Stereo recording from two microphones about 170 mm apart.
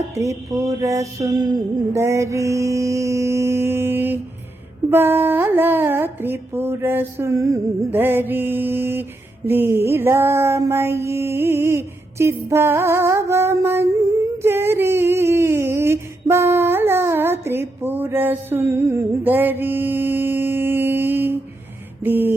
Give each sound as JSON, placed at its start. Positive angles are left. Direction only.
{"t": 0.1, "sound": "mantra", "side_deg": -20}